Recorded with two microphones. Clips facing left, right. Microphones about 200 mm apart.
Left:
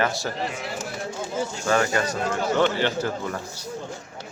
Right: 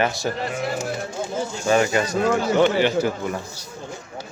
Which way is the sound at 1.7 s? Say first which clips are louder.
Right 4 dB; 15° right (ahead or behind).